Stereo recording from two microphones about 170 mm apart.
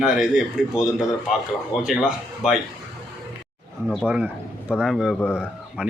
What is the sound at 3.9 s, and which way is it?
A man's voice, 5° right (ahead or behind).